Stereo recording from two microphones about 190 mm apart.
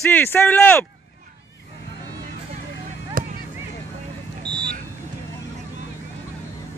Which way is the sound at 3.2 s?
45° right (ahead or behind).